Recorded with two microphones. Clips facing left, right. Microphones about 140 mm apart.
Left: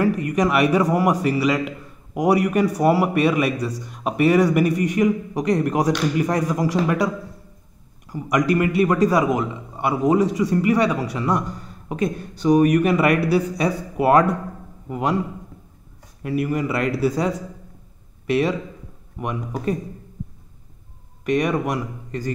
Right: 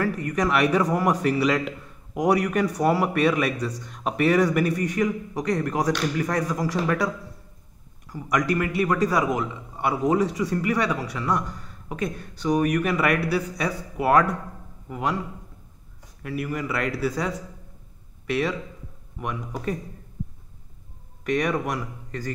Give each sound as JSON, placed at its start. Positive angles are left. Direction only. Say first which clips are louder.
{"t": 0.0, "sound": "a man's voice", "louder": "left 5 dB", "side_deg": 15}
{"t": 8.1, "sound": "a man's voice", "louder": "left 4 dB", "side_deg": 15}
{"t": 16.2, "sound": "speech", "louder": "left 6 dB", "side_deg": 20}
{"t": 21.3, "sound": "a man's voice", "louder": "left 4 dB", "side_deg": 10}